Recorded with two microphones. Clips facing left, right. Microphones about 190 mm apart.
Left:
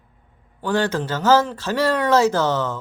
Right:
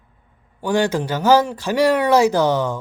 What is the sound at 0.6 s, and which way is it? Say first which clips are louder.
Speech: right 2 dB; 15° right (ahead or behind).